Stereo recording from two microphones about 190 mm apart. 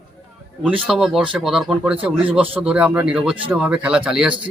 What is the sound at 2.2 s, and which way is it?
Speech, 30° right (ahead or behind).